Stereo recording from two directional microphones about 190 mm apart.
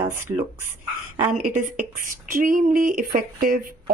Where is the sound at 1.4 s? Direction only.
45° right (ahead or behind).